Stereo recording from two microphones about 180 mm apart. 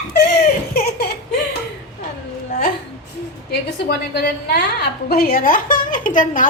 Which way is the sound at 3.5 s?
60° left (ahead or behind).